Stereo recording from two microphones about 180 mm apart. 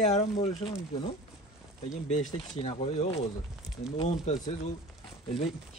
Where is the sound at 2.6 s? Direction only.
30° left (ahead or behind).